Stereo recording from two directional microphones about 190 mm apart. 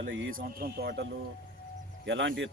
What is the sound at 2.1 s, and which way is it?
Speech, 75° right (ahead or behind).